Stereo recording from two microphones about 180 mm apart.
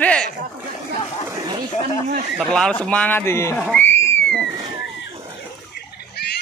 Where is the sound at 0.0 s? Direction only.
5° left (ahead or behind).